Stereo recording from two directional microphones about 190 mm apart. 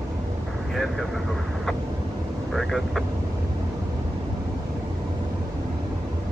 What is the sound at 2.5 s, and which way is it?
Speech, centre (ahead or behind).